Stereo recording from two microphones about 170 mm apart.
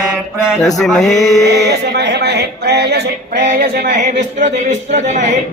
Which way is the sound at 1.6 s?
80° right.